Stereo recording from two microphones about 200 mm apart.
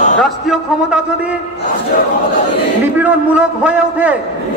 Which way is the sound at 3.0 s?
5° right (ahead or behind).